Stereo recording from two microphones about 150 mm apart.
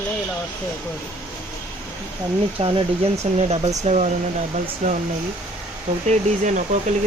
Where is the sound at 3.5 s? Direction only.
45° right (ahead or behind).